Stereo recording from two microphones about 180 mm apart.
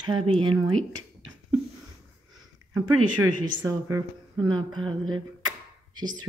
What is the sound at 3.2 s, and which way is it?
A woman's voice, 15° right (ahead or behind).